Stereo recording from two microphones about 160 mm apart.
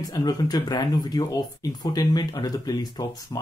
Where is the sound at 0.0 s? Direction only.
25° left (ahead or behind).